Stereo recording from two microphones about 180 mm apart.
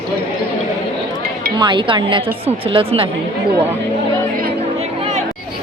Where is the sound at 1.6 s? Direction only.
25° right (ahead or behind).